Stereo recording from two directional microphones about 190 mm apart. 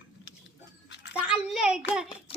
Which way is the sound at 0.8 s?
65° left (ahead or behind).